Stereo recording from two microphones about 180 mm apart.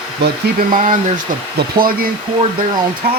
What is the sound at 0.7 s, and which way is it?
Speech, 45° right (ahead or behind).